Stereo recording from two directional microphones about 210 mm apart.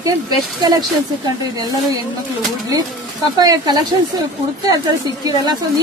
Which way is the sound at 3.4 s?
20° right (ahead or behind).